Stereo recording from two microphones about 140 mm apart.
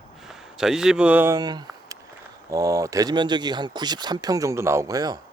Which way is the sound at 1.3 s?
30° right (ahead or behind).